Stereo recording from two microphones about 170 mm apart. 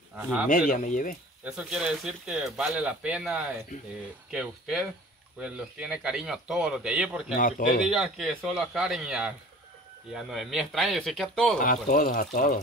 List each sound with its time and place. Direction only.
0.5 s speech: 50° left (ahead or behind)
1.4 s speech: 5° right (ahead or behind)
7.3 s speech: 55° left (ahead or behind)
7.8 s speech: centre (ahead or behind)
11.6 s speech: 55° left (ahead or behind)